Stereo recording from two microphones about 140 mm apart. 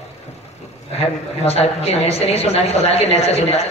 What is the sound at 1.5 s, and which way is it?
A woman's voice, 45° left (ahead or behind).